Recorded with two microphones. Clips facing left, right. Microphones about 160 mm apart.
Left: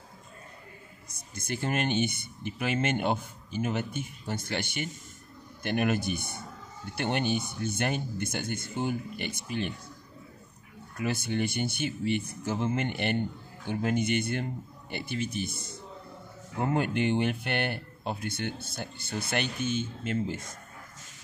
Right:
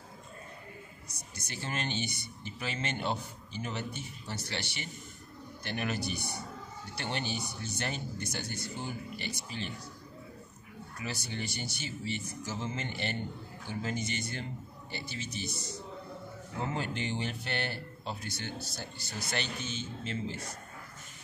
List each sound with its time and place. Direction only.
1.1 s speech: 50° left (ahead or behind)
11.0 s speech: 55° left (ahead or behind)